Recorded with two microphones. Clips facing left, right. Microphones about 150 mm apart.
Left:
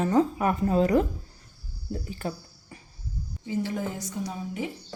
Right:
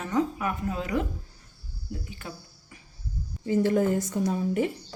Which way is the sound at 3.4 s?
55° right (ahead or behind).